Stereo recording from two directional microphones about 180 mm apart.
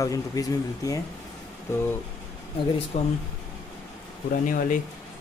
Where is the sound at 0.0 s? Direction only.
20° left (ahead or behind).